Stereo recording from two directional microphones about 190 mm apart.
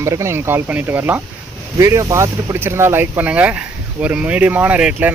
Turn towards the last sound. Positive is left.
turn(degrees=-5)  # may be behind; listen again after turning